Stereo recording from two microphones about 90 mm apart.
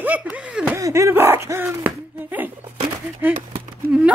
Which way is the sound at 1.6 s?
20° right (ahead or behind).